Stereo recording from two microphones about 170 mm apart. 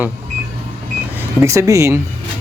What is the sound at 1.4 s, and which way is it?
Speech, 15° right (ahead or behind).